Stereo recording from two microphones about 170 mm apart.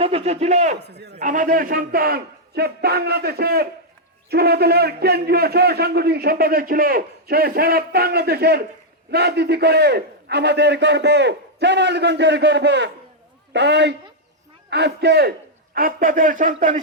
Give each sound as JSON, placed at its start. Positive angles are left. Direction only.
{"t": 0.0, "sound": "speech", "side_deg": -35}
{"t": 0.8, "sound": "a man's voice", "side_deg": -75}
{"t": 1.2, "sound": "a man's voice", "side_deg": -50}